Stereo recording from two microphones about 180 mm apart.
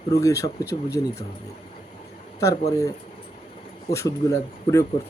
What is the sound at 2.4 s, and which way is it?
Speech, 20° left (ahead or behind).